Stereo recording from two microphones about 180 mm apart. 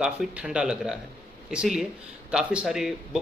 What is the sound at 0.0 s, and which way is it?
Speech, 5° right (ahead or behind).